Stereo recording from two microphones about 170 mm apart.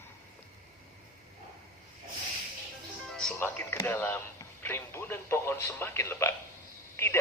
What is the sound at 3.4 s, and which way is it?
Music, 15° left (ahead or behind).